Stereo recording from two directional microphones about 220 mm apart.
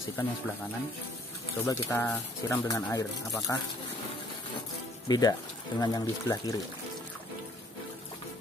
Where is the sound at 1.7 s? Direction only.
15° left (ahead or behind).